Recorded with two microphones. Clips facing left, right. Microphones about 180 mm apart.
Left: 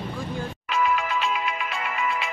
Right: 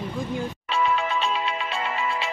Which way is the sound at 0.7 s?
30° right (ahead or behind).